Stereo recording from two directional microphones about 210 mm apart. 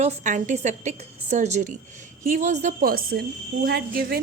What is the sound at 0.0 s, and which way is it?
A woman's voice, 35° right (ahead or behind).